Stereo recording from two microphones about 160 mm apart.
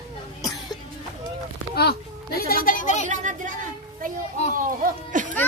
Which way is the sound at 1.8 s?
75° left (ahead or behind).